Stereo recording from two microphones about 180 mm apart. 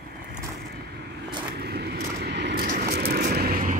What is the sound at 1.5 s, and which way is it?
Vehicle, 60° right (ahead or behind).